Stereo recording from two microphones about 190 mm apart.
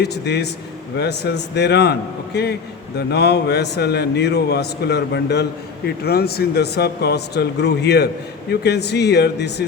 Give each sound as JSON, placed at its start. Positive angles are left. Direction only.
{"t": 0.0, "sound": "a man's voice", "side_deg": 60}